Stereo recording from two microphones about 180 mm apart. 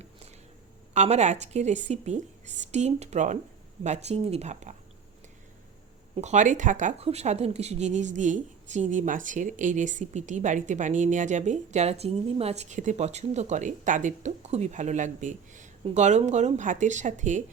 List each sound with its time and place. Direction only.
0.9 s speech: 40° right (ahead or behind)
6.1 s speech: 40° right (ahead or behind)